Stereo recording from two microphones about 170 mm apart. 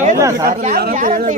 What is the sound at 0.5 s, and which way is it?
Speech, 45° right (ahead or behind).